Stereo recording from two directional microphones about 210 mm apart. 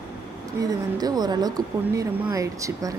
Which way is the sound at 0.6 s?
15° right (ahead or behind).